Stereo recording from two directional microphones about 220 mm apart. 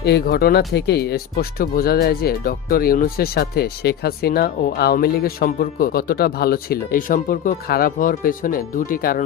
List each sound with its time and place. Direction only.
0.0 s speech: 45° left (ahead or behind)